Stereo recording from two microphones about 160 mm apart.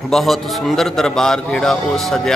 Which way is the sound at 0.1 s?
Centre (ahead or behind).